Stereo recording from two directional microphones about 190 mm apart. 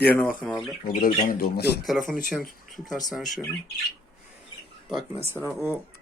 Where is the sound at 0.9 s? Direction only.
45° left (ahead or behind).